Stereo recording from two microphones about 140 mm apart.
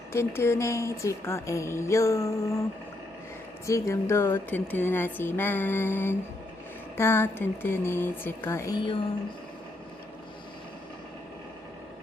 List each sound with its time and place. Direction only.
0.1 s a woman's voice: 20° left (ahead or behind)
3.7 s speech: 20° left (ahead or behind)
8.7 s speech: 35° left (ahead or behind)